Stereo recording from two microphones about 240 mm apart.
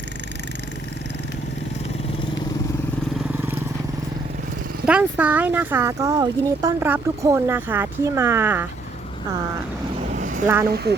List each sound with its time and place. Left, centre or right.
4.9 s speech: centre
10.2 s vehicle: right
10.4 s speech: centre